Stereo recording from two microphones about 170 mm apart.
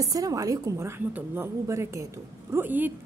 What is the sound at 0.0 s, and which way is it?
A woman's voice, 20° right (ahead or behind).